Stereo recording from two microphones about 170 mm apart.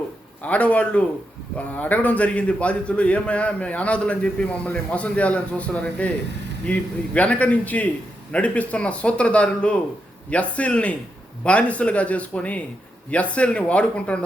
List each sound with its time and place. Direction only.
0.4 s a man's voice: 10° left (ahead or behind)